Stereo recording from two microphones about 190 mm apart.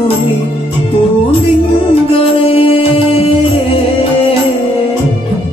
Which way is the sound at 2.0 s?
30° left (ahead or behind).